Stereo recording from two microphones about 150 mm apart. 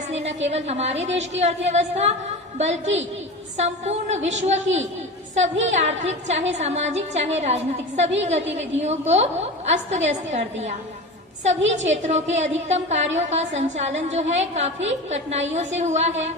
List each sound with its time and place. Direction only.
0.1 s a woman's voice: 50° right (ahead or behind)